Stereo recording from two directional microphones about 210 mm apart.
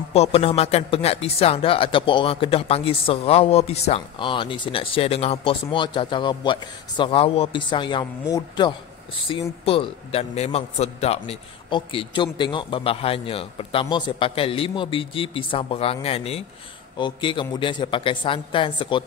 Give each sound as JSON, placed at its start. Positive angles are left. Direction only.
{"t": 0.1, "sound": "speech", "side_deg": 30}